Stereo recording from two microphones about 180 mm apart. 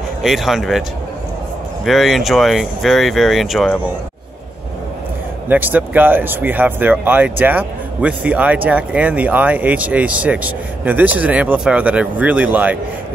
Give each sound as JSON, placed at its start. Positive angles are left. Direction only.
{"t": 0.2, "sound": "speech", "side_deg": 0}
{"t": 1.9, "sound": "speech", "side_deg": 0}
{"t": 5.5, "sound": "speech", "side_deg": -10}